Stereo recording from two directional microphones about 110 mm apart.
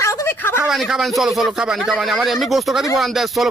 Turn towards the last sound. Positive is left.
turn(degrees=0)  # may be behind; listen again after turning